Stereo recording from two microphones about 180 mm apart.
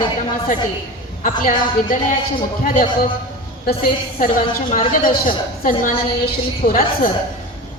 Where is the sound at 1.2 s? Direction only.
45° left (ahead or behind).